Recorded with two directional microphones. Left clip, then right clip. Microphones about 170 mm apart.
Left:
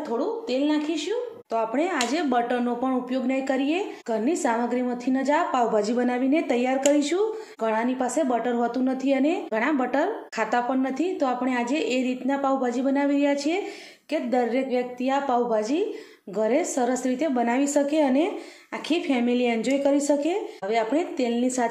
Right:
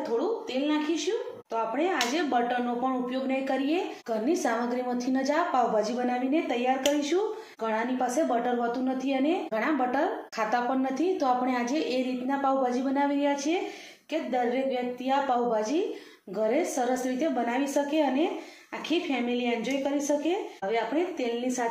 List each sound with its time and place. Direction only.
0.5 s a sound: 90° left
1.5 s a woman's voice: 80° left
7.6 s a woman's voice: 60° left (ahead or behind)
14.1 s a woman's voice: 70° left (ahead or behind)